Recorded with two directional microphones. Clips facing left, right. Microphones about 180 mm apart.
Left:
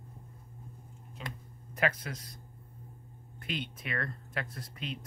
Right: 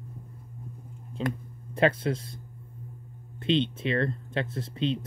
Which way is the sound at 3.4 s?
25° right (ahead or behind).